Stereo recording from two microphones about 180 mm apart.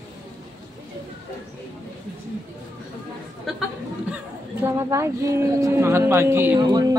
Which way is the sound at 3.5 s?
Centre (ahead or behind).